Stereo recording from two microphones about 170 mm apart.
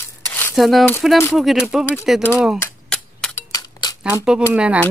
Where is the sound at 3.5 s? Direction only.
25° left (ahead or behind).